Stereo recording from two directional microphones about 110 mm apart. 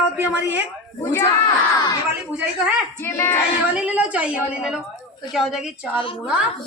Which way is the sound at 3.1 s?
25° left (ahead or behind).